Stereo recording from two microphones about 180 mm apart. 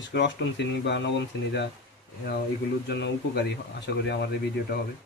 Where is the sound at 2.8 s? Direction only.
70° left (ahead or behind).